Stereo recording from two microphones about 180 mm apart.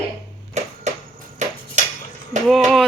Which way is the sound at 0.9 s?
40° right (ahead or behind).